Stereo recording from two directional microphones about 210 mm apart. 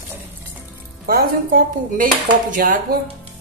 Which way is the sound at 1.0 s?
45° right (ahead or behind).